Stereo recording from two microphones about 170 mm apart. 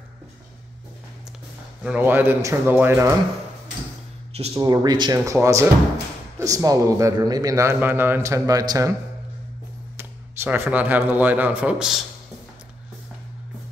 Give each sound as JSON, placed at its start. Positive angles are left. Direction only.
{"t": 1.8, "sound": "a man's voice", "side_deg": -5}
{"t": 4.6, "sound": "a man's voice", "side_deg": -25}
{"t": 9.9, "sound": "speech", "side_deg": -15}